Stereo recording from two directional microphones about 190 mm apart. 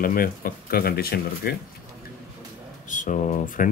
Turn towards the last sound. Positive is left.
turn(degrees=40)  # may be behind; listen again after turning